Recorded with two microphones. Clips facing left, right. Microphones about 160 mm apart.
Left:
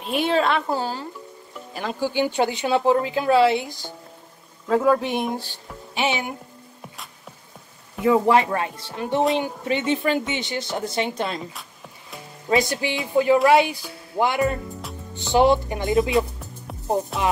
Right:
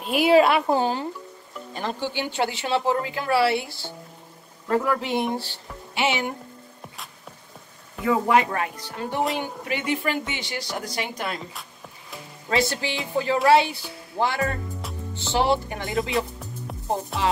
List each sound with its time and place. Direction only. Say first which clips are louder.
0.0 s a woman's voice: right 4 dB; 5° right (ahead or behind)
1.7 s speech: left 3 dB; 5° left (ahead or behind)
8.0 s speech: left 3 dB; 25° left (ahead or behind)
12.4 s speech: left 3 dB; 15° left (ahead or behind)